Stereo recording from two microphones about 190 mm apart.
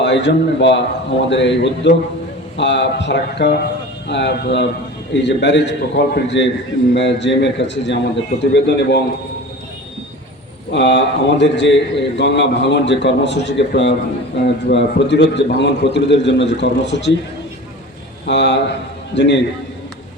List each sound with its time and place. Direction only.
0.0 s a man's voice: 65° left (ahead or behind)
10.7 s a man's voice: 70° left (ahead or behind)
18.3 s a man's voice: 65° left (ahead or behind)